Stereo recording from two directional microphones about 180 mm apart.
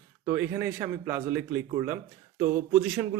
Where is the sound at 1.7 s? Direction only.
25° right (ahead or behind).